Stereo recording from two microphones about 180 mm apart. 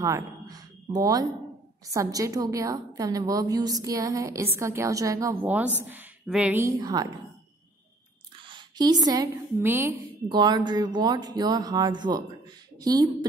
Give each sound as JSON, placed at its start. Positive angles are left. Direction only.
{"t": 0.0, "sound": "a woman's voice", "side_deg": -20}
{"t": 8.5, "sound": "speech", "side_deg": -25}
{"t": 10.2, "sound": "a woman's voice", "side_deg": -25}